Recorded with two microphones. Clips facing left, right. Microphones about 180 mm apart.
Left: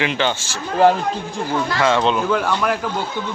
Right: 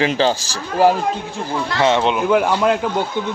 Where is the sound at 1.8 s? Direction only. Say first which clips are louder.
Right 2 dB; 20° right (ahead or behind).